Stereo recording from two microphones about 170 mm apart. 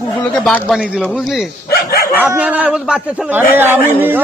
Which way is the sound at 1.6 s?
65° left (ahead or behind).